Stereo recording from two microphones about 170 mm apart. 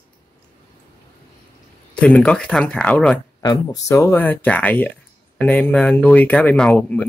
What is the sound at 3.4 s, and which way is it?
Speech, 20° left (ahead or behind).